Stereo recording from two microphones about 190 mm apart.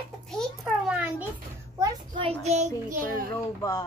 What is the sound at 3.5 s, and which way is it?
Speech, 15° left (ahead or behind).